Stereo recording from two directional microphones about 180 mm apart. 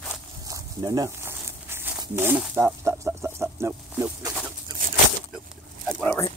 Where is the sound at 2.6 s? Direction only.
15° right (ahead or behind).